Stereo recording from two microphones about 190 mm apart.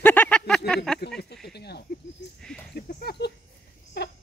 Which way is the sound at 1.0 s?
60° left (ahead or behind).